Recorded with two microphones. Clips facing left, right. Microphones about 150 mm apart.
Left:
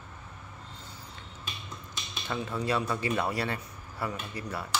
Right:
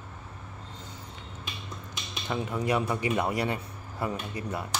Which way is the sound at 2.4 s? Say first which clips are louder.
Right 2 dB; 15° right (ahead or behind).